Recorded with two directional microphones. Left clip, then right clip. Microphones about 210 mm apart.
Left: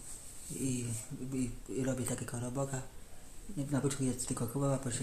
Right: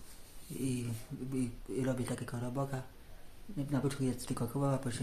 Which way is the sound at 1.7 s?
10° right (ahead or behind).